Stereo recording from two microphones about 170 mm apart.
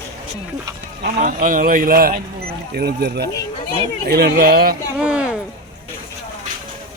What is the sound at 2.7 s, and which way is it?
A man's voice, 70° right (ahead or behind).